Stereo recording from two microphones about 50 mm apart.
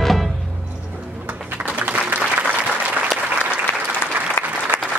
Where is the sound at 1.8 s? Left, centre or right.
Right.